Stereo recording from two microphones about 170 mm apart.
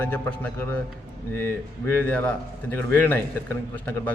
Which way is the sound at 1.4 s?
15° left (ahead or behind).